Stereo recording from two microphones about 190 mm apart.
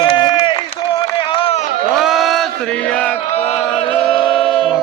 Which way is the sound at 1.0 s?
25° left (ahead or behind).